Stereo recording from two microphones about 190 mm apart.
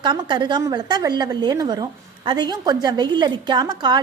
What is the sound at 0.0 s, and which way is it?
A woman's voice, 25° right (ahead or behind).